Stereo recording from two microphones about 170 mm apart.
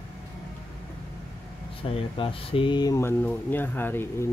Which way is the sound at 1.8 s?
30° left (ahead or behind).